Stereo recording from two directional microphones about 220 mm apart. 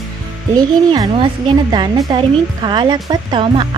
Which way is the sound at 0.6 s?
15° right (ahead or behind).